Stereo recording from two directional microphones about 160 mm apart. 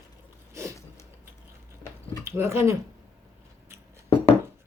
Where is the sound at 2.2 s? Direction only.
15° right (ahead or behind).